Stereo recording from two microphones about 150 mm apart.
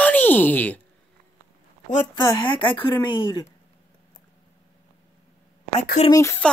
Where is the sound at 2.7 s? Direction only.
30° left (ahead or behind).